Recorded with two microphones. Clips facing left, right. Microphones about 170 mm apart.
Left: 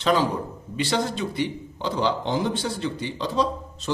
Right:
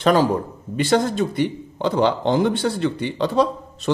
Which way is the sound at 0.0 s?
50° right (ahead or behind).